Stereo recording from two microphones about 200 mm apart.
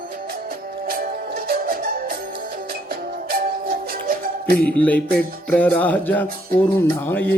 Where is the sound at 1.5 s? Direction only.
45° right (ahead or behind).